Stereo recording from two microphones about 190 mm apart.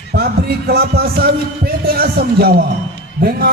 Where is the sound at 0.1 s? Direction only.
55° right (ahead or behind).